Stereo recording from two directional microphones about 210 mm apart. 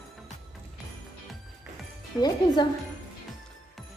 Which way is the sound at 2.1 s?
20° left (ahead or behind).